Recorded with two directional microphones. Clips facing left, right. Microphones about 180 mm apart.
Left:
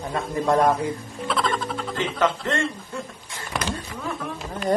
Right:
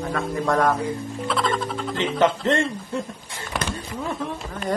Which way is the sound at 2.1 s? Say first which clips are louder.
Right 4 dB; 20° right (ahead or behind).